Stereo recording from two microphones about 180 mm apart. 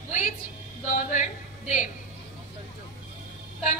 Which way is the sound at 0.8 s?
45° left (ahead or behind).